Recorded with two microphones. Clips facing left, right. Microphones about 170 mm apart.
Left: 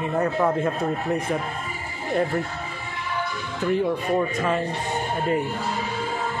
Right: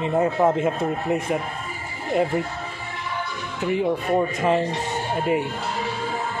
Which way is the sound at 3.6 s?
10° right (ahead or behind).